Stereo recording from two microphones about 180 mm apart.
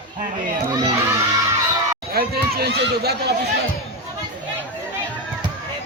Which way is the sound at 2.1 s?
60° right (ahead or behind).